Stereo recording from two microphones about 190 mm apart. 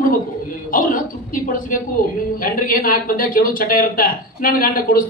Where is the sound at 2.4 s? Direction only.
50° left (ahead or behind).